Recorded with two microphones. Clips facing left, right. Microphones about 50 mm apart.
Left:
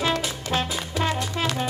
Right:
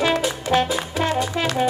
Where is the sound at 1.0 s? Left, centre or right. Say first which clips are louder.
Right 3 dB; centre.